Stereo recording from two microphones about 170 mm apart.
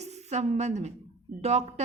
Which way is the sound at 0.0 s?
40° right (ahead or behind).